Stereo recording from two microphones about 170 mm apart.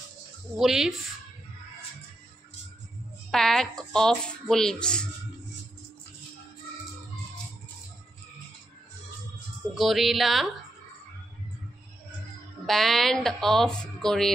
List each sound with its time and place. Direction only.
0.6 s speech: 5° right (ahead or behind)
3.3 s speech: centre (ahead or behind)
9.8 s speech: centre (ahead or behind)
12.6 s speech: centre (ahead or behind)